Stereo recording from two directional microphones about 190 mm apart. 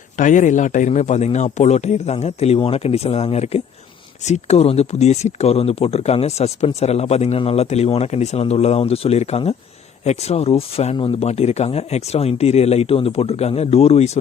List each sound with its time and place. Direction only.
0.2 s speech: 40° left (ahead or behind)